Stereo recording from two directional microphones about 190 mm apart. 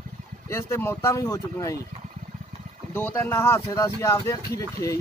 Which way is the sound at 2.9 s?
10° left (ahead or behind).